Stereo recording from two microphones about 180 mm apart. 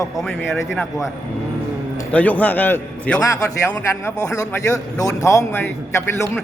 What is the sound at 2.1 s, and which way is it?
A man's voice, 10° left (ahead or behind).